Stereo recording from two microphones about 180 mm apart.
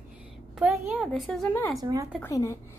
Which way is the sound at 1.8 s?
20° right (ahead or behind).